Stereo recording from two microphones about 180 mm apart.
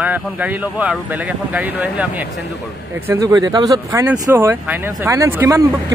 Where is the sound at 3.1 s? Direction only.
20° right (ahead or behind).